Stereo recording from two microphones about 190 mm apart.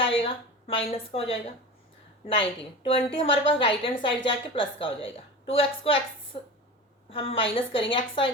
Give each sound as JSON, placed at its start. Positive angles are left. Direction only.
{"t": 0.2, "sound": "a woman's voice", "side_deg": 30}